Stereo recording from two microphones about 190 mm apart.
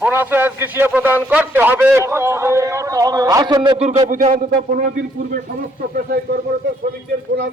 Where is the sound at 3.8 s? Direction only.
40° right (ahead or behind).